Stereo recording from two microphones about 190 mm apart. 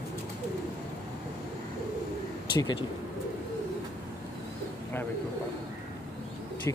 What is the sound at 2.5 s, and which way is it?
Speech, 25° left (ahead or behind).